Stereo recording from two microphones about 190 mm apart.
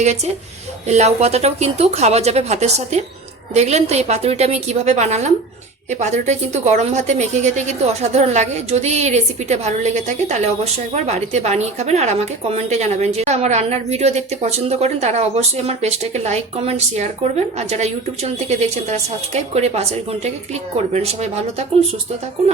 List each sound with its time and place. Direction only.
0.9 s a woman's voice: 35° right (ahead or behind)